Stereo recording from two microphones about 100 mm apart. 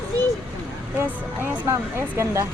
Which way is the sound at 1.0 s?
20° right (ahead or behind).